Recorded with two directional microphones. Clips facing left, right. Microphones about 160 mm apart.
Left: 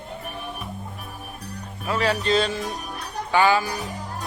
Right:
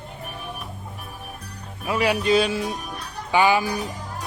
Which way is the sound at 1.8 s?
10° right (ahead or behind).